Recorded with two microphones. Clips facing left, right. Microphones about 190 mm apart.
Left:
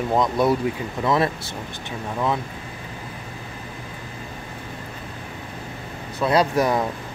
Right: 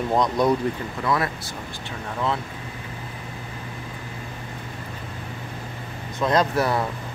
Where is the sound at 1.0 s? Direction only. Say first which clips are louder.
Left 4 dB; 25° left (ahead or behind).